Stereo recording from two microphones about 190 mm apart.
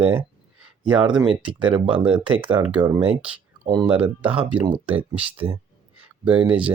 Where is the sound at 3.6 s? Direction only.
20° right (ahead or behind).